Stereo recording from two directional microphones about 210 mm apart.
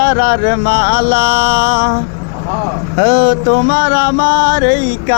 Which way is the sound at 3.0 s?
50° left (ahead or behind).